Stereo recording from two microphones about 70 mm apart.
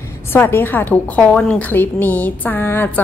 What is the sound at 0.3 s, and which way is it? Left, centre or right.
A woman's voice, left.